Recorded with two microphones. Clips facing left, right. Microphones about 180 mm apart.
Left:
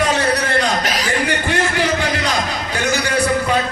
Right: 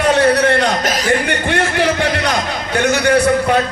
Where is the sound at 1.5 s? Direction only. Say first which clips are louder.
Right 5 dB; 60° right (ahead or behind).